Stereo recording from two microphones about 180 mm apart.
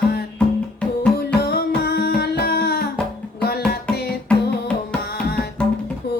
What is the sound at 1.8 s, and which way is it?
Music, 60° left (ahead or behind).